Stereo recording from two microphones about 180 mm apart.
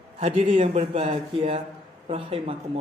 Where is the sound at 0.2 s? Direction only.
35° right (ahead or behind).